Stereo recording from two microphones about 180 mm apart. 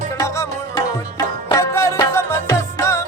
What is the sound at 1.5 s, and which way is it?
Music, 15° left (ahead or behind).